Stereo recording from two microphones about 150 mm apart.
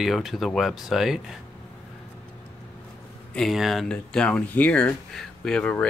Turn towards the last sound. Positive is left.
turn(degrees=10)  # may be behind; listen again after turning